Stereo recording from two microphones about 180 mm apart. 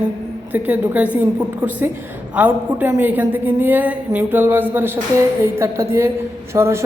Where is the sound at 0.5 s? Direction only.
10° right (ahead or behind).